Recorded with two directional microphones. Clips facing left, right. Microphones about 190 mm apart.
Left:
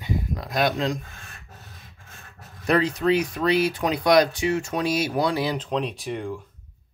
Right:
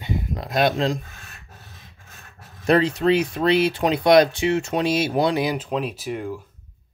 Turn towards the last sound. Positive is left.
turn(degrees=-5)  # may be behind; listen again after turning